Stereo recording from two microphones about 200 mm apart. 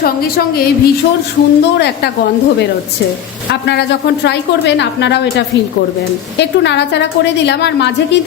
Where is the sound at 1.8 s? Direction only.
55° left (ahead or behind).